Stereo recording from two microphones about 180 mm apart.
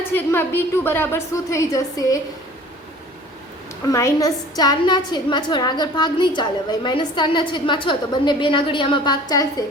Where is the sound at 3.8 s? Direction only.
15° left (ahead or behind).